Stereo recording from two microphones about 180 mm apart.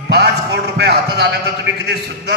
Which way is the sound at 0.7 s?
70° right (ahead or behind).